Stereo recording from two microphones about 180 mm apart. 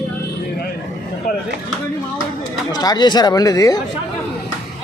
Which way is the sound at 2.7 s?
20° left (ahead or behind).